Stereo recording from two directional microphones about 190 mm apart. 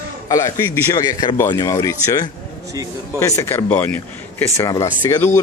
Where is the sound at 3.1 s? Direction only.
15° left (ahead or behind).